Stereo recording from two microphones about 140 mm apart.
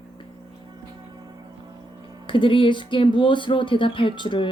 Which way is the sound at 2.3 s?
40° left (ahead or behind).